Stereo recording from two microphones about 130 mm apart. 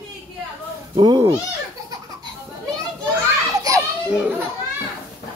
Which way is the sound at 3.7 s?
30° right (ahead or behind).